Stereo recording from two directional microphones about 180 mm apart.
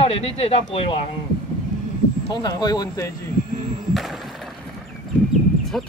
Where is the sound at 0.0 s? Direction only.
35° left (ahead or behind).